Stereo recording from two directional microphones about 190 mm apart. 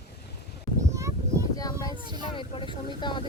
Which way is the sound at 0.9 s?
15° right (ahead or behind).